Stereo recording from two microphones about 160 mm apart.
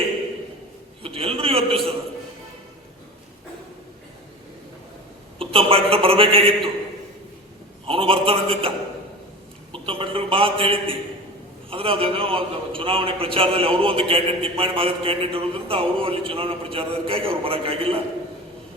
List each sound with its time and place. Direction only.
1.0 s a man's voice: 35° right (ahead or behind)
5.4 s a man's voice: 35° right (ahead or behind)
7.9 s a man's voice: 35° right (ahead or behind)
9.7 s a man's voice: 35° right (ahead or behind)